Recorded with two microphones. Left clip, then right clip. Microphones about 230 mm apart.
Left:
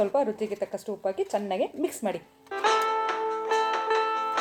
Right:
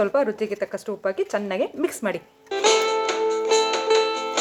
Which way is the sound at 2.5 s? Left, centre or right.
Right.